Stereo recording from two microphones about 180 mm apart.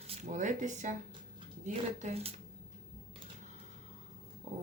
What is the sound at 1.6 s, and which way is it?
Speech, 40° right (ahead or behind).